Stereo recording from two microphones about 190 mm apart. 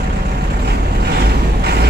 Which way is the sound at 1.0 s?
60° right (ahead or behind).